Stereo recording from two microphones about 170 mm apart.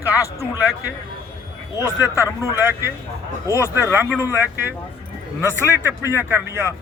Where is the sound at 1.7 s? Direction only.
20° left (ahead or behind).